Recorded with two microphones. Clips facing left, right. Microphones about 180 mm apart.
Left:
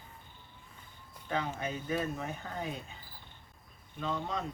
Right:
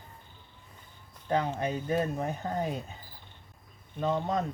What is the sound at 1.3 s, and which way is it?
Speech, 40° right (ahead or behind).